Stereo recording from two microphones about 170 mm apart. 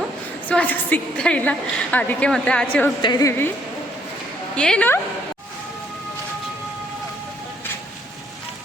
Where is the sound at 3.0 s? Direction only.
25° left (ahead or behind).